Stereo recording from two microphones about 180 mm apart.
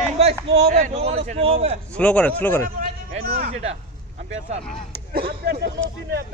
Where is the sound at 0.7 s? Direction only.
40° right (ahead or behind).